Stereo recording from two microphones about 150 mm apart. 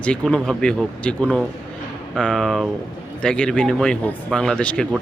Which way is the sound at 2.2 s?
5° left (ahead or behind).